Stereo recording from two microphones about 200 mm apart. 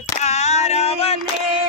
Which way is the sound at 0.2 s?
35° left (ahead or behind).